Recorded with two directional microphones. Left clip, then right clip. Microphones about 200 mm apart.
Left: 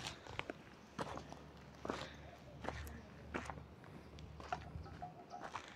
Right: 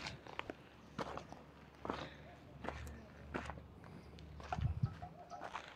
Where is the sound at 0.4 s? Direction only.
5° left (ahead or behind).